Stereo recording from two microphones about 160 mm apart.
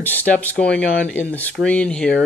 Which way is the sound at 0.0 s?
10° left (ahead or behind).